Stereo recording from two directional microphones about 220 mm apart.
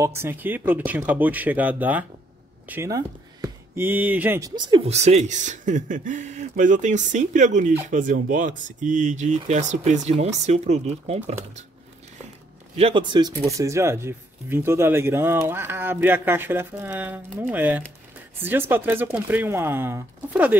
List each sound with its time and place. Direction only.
0.0 s speech: 10° right (ahead or behind); by 11.6 s 30° right (ahead or behind)
12.7 s speech: 25° right (ahead or behind); by 20.5 s 10° right (ahead or behind)